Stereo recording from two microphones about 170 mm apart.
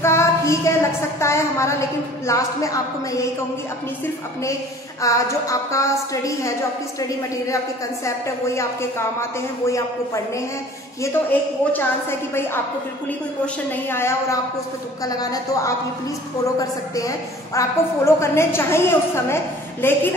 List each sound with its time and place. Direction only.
0.0 s a sound: 15° left (ahead or behind)
1.2 s a woman's voice: 15° left (ahead or behind)
5.0 s a woman's voice: 20° left (ahead or behind)
9.7 s a woman's voice: 15° left (ahead or behind)
13.7 s a woman's voice: 15° left (ahead or behind)
17.6 s a woman's voice: 15° left (ahead or behind)